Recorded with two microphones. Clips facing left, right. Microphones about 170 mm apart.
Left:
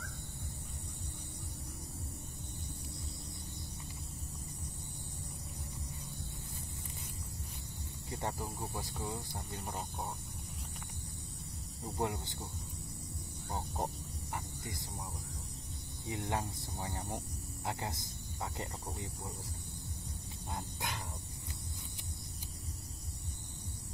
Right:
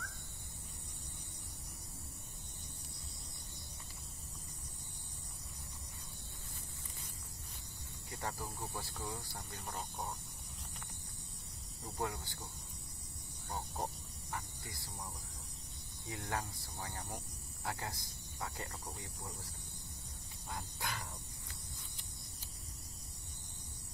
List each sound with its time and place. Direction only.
8.1 s speech: 25° left (ahead or behind)
9.7 s speech: 5° left (ahead or behind)
11.8 s speech: 20° left (ahead or behind)
13.5 s a sound: 20° left (ahead or behind)
16.1 s speech: 20° left (ahead or behind)
20.5 s dog: 20° left (ahead or behind)